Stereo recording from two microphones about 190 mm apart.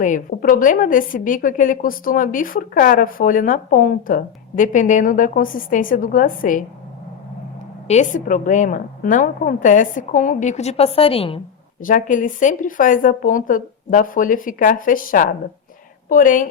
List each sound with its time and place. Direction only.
0.0 s a woman's voice: 45° left (ahead or behind)
7.9 s a woman's voice: 40° left (ahead or behind)
11.8 s a woman's voice: 45° left (ahead or behind)